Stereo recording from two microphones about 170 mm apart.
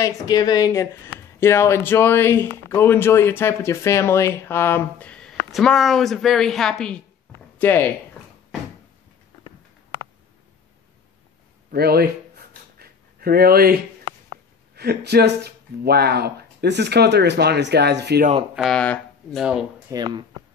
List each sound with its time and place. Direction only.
0.0 s speech: 20° left (ahead or behind)
11.7 s a sound: 65° right (ahead or behind)
14.8 s speech: 70° right (ahead or behind)
18.5 s speech: centre (ahead or behind)
19.9 s speech: 25° right (ahead or behind)